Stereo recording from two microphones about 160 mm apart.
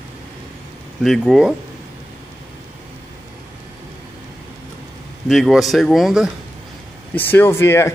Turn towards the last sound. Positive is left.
turn(degrees=15)  # may be behind; listen again after turning